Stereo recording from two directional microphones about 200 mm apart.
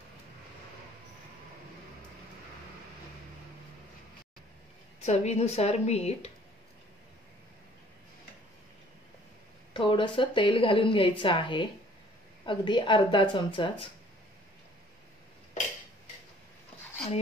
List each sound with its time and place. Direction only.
5.0 s a woman's voice: 35° left (ahead or behind)
9.8 s a woman's voice: 25° left (ahead or behind)